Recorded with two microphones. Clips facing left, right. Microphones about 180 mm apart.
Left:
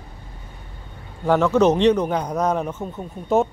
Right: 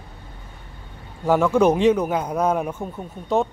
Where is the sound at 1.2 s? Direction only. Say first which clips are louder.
Even; 10° right (ahead or behind).